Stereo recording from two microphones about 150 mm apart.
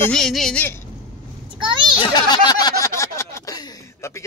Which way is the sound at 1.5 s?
30° right (ahead or behind).